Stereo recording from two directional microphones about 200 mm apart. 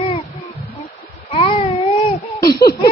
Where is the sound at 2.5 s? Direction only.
50° left (ahead or behind).